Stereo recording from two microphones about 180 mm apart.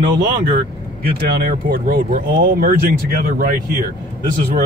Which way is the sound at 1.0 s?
55° right (ahead or behind).